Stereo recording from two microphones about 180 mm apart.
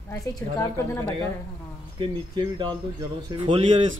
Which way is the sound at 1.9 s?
25° right (ahead or behind).